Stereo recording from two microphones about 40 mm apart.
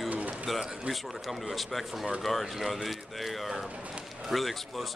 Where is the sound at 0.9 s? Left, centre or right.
Centre.